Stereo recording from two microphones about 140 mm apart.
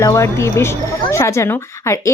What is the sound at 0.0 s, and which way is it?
Speech, 20° left (ahead or behind).